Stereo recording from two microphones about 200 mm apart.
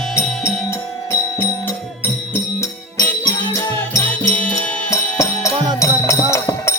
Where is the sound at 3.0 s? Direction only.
15° left (ahead or behind).